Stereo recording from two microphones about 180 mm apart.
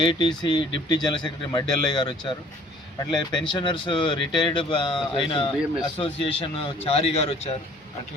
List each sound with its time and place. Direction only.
0.1 s speech: 25° left (ahead or behind)